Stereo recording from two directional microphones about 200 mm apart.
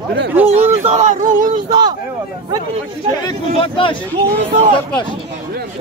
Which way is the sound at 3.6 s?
25° left (ahead or behind).